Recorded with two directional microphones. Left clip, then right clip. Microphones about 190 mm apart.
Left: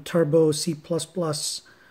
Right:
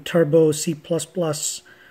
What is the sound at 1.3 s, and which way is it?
Speech, 90° left.